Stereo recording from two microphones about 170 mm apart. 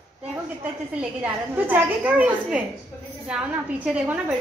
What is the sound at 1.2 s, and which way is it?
A woman's voice, 10° right (ahead or behind).